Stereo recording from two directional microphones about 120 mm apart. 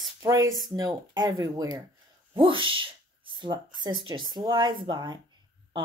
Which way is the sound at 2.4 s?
45° right (ahead or behind).